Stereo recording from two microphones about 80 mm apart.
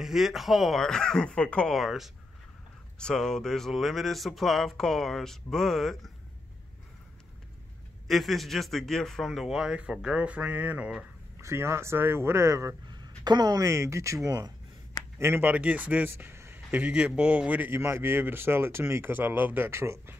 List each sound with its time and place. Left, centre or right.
0.0 s speech: centre
1.8 s speech: centre
3.0 s speech: centre
8.1 s speech: centre
11.4 s speech: right
12.8 s speech: right
15.1 s speech: right
15.4 s speech: centre
16.3 s a sound: right
16.8 s speech: centre
19.7 s speech: right